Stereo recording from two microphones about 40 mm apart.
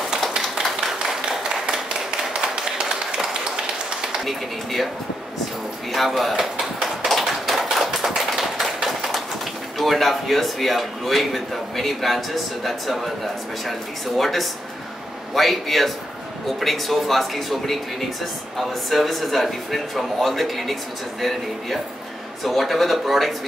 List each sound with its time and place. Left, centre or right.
0.8 s a sound: centre
2.0 s tap: centre
4.2 s a man's voice: centre
5.9 s a man's voice: centre
6.6 s tap: centre
8.8 s a sound: centre
9.8 s a man's voice: centre